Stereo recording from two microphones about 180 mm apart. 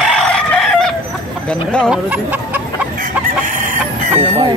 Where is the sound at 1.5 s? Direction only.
5° left (ahead or behind).